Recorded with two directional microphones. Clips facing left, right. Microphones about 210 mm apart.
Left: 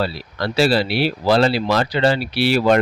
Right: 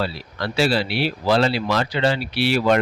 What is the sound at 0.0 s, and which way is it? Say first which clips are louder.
Speech: left 3 dB; 35° left (ahead or behind).